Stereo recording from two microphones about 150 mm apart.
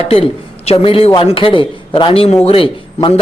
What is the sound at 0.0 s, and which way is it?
Speech, 40° left (ahead or behind).